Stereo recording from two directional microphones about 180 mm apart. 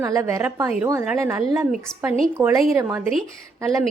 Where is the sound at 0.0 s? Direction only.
15° right (ahead or behind).